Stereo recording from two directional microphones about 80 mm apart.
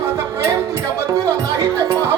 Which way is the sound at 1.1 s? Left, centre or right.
Right.